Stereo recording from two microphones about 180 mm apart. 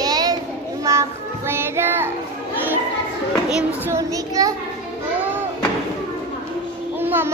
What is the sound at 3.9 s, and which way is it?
Child singing, 20° right (ahead or behind).